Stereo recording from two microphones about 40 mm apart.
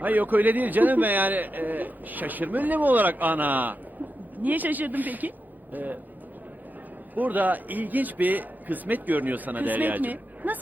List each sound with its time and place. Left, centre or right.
0.0 s a man's voice: right
7.2 s a man's voice: right